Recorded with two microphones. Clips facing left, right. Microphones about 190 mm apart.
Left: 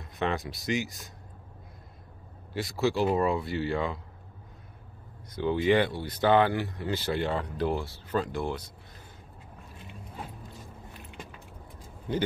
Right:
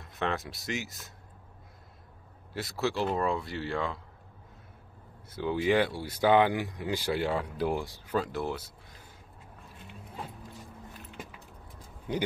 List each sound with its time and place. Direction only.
0.0 s speech: centre (ahead or behind)
2.5 s speech: centre (ahead or behind)
5.3 s speech: 5° right (ahead or behind)